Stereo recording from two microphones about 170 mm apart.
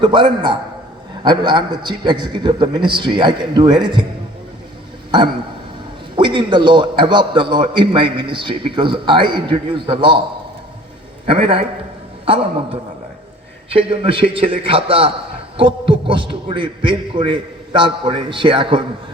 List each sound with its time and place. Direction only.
0.0 s a man's voice: 25° right (ahead or behind)
6.1 s a man's voice: 30° right (ahead or behind)
12.2 s a man's voice: 35° right (ahead or behind)